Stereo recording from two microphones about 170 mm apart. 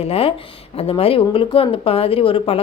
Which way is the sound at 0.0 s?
35° left (ahead or behind).